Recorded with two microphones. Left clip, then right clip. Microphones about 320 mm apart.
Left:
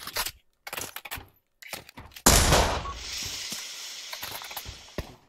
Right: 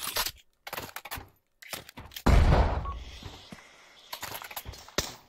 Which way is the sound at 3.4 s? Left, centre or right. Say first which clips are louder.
Left 13 dB; left.